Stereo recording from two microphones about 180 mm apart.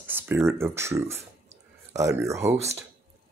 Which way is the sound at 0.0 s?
10° right (ahead or behind).